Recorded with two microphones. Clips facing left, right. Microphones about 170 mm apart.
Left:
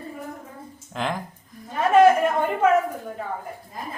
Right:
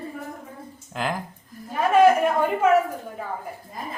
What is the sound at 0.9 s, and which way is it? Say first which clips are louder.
Speech: even; 5° right (ahead or behind).